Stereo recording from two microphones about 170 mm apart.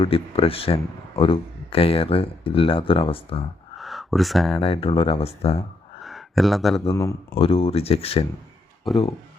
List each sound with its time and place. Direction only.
0.0 s speech: 35° left (ahead or behind)
3.8 s a sound: centre (ahead or behind)
4.6 s speech: 35° left (ahead or behind)
6.0 s a sound: centre (ahead or behind)
6.9 s speech: 15° left (ahead or behind)
7.3 s speech: 35° left (ahead or behind)
8.9 s speech: centre (ahead or behind)